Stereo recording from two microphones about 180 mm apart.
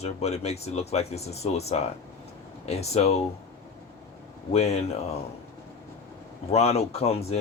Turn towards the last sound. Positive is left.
turn(degrees=35)  # may be behind; listen again after turning